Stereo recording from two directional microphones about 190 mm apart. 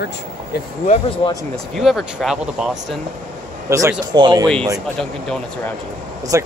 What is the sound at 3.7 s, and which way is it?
Speech, 15° right (ahead or behind).